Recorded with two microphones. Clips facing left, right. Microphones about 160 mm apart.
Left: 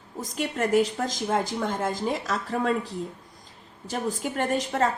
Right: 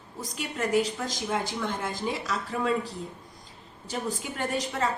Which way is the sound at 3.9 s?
45° left (ahead or behind).